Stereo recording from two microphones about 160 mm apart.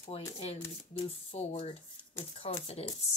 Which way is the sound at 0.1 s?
40° left (ahead or behind).